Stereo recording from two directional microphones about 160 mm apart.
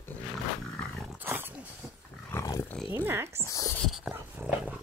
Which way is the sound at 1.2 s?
10° right (ahead or behind).